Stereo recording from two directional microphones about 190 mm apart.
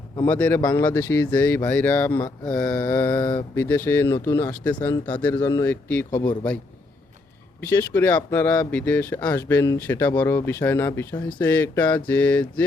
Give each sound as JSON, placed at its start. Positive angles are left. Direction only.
{"t": 0.2, "sound": "speech", "side_deg": 10}
{"t": 0.6, "sound": "speech", "side_deg": 20}
{"t": 3.2, "sound": "speech", "side_deg": 20}
{"t": 3.6, "sound": "speech", "side_deg": 10}
{"t": 7.6, "sound": "speech", "side_deg": 10}